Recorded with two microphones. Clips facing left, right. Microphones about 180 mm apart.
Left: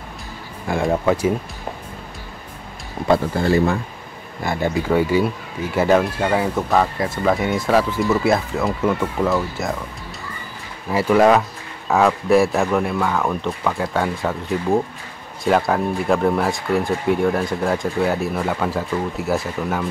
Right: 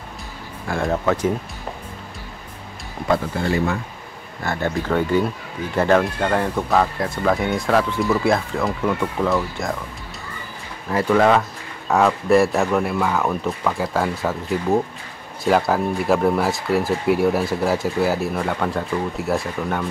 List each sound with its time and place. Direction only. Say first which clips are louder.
0.7 s speech: left 2 dB; 15° left (ahead or behind)
3.1 s speech: left 4 dB; 30° left (ahead or behind)
4.4 s speech: left 2 dB; 15° left (ahead or behind)
10.9 s speech: left 2 dB; 10° left (ahead or behind)